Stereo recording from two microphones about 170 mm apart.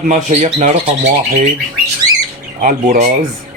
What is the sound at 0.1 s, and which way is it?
Speech, 45° right (ahead or behind).